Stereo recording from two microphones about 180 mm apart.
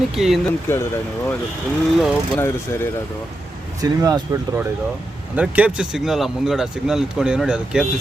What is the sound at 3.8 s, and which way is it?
Speech, 20° right (ahead or behind).